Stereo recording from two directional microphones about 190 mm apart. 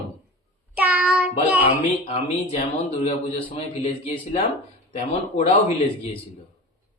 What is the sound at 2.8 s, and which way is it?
A man's voice, 35° left (ahead or behind).